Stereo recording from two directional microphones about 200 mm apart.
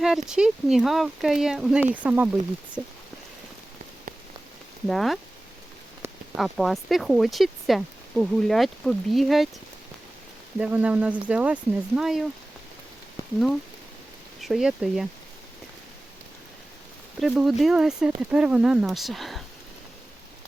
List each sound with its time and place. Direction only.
0.0 s speech: 5° right (ahead or behind)
4.9 s speech: centre (ahead or behind)
6.3 s speech: centre (ahead or behind)
10.6 s speech: 5° right (ahead or behind)
13.2 s a sound: 15° left (ahead or behind)
14.4 s speech: centre (ahead or behind)
17.2 s speech: centre (ahead or behind)